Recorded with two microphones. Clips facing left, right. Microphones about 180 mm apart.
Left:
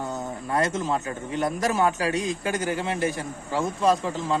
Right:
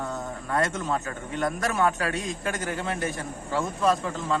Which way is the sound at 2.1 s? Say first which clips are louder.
Left 4 dB; centre (ahead or behind).